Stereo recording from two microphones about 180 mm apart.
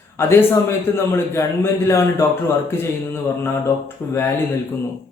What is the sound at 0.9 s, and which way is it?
Speech, 15° left (ahead or behind).